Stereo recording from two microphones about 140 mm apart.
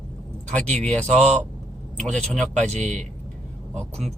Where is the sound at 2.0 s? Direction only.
5° left (ahead or behind).